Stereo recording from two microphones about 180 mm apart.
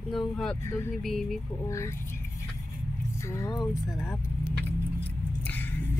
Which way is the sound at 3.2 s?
15° left (ahead or behind).